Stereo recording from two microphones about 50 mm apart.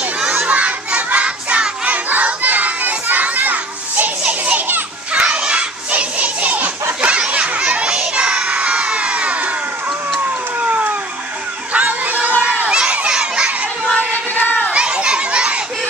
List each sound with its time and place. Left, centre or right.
0.3 s crowd: right
4.3 s children playing: right
8.1 s crowd: right
11.7 s a sound: right
12.6 s crowd: centre
13.1 s a sound: centre
13.9 s music: left
14.7 s children playing: right